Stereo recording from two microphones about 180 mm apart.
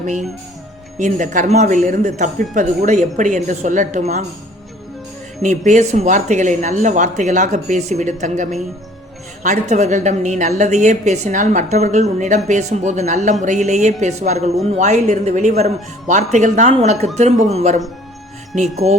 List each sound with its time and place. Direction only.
0.9 s a woman's voice: 45° right (ahead or behind)
5.4 s a woman's voice: 40° right (ahead or behind)
18.8 s a woman's voice: 35° right (ahead or behind)